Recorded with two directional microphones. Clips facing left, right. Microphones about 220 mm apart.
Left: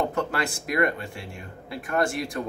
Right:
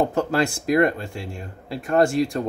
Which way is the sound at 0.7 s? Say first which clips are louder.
Right 5 dB; 30° right (ahead or behind).